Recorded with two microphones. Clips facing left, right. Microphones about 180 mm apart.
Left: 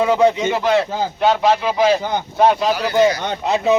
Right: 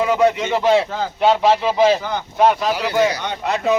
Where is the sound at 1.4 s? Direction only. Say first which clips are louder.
Even; 5° right (ahead or behind).